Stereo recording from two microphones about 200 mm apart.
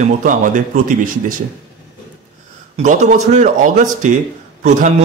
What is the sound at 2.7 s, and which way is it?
A man's voice, 35° right (ahead or behind).